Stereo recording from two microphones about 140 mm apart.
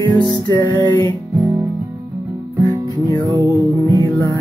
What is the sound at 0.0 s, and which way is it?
Music, 30° right (ahead or behind).